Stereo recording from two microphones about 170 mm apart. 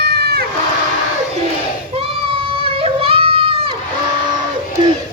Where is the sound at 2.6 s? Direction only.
35° right (ahead or behind).